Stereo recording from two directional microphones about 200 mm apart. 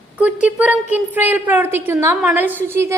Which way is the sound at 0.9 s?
10° right (ahead or behind).